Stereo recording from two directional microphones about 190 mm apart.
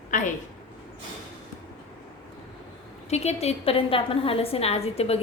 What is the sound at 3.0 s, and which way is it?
A woman's voice, 35° left (ahead or behind).